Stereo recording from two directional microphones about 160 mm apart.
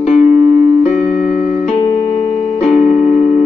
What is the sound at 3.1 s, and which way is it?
Tick-tock, 45° left (ahead or behind).